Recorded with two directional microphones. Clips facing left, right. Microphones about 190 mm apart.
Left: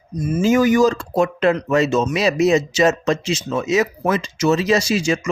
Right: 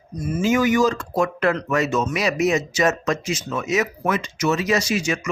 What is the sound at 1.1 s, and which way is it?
Speech, 25° left (ahead or behind).